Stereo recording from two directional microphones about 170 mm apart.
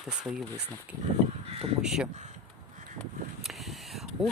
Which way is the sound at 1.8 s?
5° right (ahead or behind).